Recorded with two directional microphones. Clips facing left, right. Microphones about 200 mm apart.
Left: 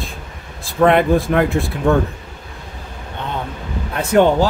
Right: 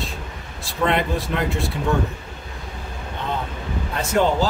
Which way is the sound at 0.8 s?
55° left (ahead or behind).